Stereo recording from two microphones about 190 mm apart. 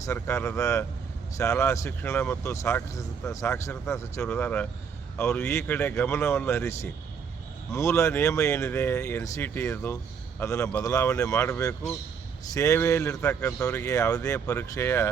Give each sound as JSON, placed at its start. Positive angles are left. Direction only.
{"t": 0.0, "sound": "speech", "side_deg": 15}